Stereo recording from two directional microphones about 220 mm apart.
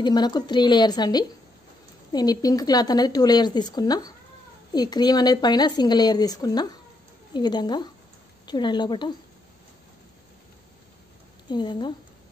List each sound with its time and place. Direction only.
0.0 s a woman's voice: 20° left (ahead or behind)
11.4 s speech: 20° left (ahead or behind)